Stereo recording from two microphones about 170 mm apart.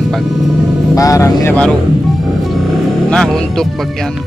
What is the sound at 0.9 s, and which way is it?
Speech, 20° left (ahead or behind).